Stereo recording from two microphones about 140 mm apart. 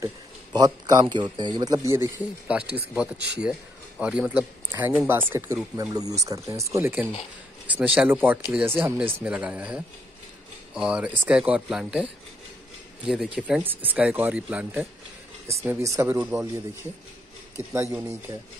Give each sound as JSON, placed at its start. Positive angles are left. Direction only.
{"t": 0.0, "sound": "speech", "side_deg": -30}
{"t": 2.4, "sound": "speech", "side_deg": -10}
{"t": 5.8, "sound": "speech", "side_deg": -25}
{"t": 17.6, "sound": "speech", "side_deg": -20}